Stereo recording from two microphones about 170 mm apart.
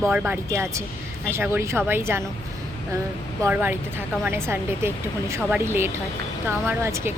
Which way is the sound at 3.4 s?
10° right (ahead or behind).